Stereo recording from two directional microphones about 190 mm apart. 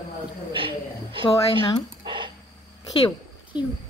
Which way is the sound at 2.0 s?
25° right (ahead or behind).